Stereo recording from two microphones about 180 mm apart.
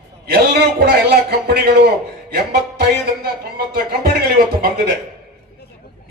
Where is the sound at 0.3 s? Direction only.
60° right (ahead or behind).